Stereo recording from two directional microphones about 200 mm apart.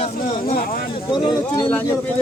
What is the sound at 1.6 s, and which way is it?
Speech, 10° left (ahead or behind).